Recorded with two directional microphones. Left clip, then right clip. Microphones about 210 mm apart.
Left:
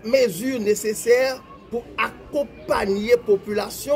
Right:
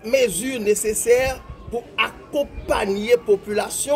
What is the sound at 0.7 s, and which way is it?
Speech, 40° right (ahead or behind).